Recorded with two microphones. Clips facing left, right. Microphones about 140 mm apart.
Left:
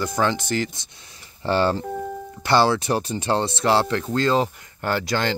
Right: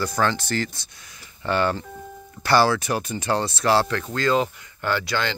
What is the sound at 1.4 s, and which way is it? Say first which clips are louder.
Speech: left 2 dB; 30° left (ahead or behind).